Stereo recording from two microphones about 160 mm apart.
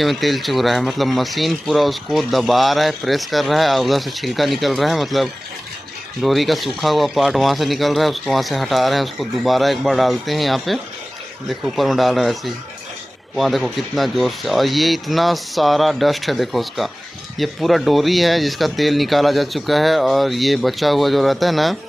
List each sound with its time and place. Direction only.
0.0 s speech: centre (ahead or behind)